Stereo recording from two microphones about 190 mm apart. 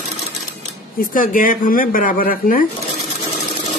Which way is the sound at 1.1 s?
45° left (ahead or behind).